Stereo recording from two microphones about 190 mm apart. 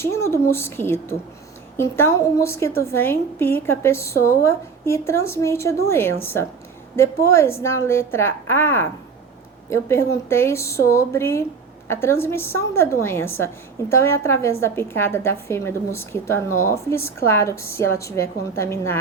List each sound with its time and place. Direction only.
0.0 s a woman's voice: 15° left (ahead or behind)